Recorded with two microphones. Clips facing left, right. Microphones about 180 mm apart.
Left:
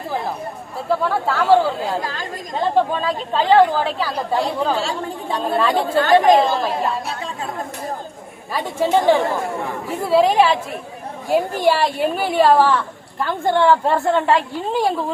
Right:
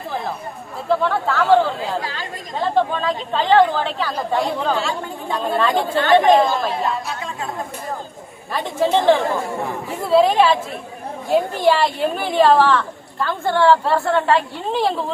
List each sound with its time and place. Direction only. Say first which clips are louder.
0.9 s a woman's voice: right 1 dB; 10° left (ahead or behind)
2.0 s speech: left 1 dB; 45° left (ahead or behind)
2.9 s a woman's voice: left 1 dB; 10° left (ahead or behind)
4.8 s speech: left 1 dB; 35° left (ahead or behind)
8.5 s a woman's voice: even; 10° left (ahead or behind)